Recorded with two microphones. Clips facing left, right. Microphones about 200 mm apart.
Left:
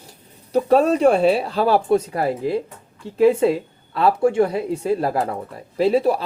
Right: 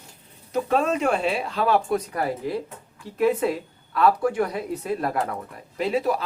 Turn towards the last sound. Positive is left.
turn(degrees=30)  # may be behind; listen again after turning